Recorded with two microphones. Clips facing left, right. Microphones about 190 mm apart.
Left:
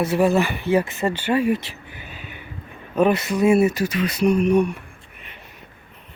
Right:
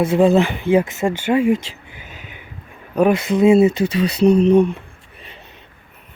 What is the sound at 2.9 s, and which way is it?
Speech, 15° right (ahead or behind).